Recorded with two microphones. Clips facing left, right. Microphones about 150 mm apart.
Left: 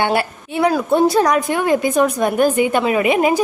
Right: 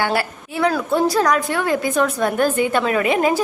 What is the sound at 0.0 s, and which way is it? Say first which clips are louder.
A woman's voice: left 3 dB; 25° left (ahead or behind).